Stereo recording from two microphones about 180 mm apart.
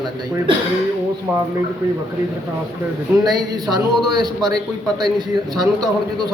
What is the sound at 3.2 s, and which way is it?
A man's voice, 20° right (ahead or behind).